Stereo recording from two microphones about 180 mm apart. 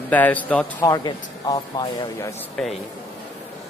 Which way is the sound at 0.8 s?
20° left (ahead or behind).